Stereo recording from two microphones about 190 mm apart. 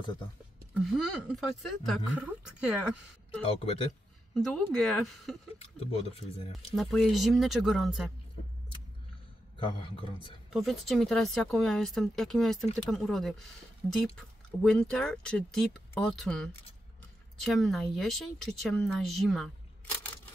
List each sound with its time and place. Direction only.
0.9 s speech: centre (ahead or behind)
3.4 s speech: 30° left (ahead or behind)
4.3 s speech: centre (ahead or behind)
5.6 s speech: 30° left (ahead or behind)
6.7 s speech: centre (ahead or behind)
9.6 s a man's voice: 25° left (ahead or behind)
10.5 s speech: centre (ahead or behind)